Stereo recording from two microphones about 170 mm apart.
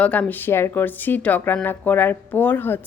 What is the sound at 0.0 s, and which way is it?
Speech, 10° left (ahead or behind).